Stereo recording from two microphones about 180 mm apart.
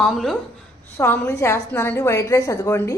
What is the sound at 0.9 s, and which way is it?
A woman's voice, 15° left (ahead or behind).